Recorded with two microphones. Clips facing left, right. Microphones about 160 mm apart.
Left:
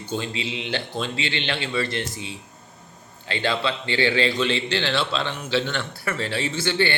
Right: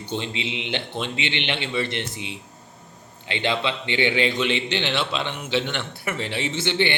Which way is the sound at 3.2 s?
20° right (ahead or behind).